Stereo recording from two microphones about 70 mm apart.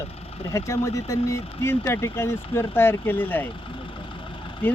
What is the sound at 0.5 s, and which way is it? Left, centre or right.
Speech, left.